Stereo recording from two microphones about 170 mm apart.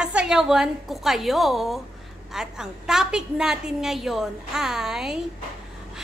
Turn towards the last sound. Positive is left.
turn(degrees=-5)  # may be behind; listen again after turning